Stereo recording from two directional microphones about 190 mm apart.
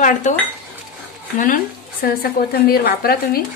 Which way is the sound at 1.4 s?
50° left (ahead or behind).